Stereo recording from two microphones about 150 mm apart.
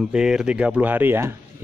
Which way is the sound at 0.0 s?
5° right (ahead or behind).